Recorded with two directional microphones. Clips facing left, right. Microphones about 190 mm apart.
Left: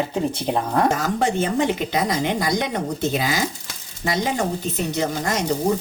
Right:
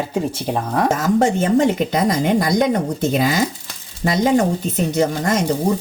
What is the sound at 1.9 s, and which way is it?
Speech, 50° right (ahead or behind).